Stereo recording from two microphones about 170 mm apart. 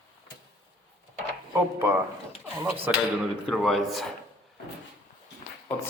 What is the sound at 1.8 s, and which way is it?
Speech, 15° right (ahead or behind).